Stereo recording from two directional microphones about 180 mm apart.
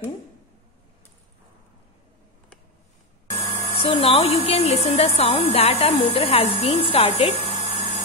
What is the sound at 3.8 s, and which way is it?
A woman's voice, 30° left (ahead or behind).